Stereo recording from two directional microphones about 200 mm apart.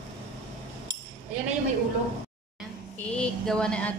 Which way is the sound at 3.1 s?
5° left (ahead or behind).